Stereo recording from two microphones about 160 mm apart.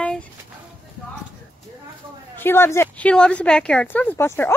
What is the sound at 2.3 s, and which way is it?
A woman's voice, 15° left (ahead or behind).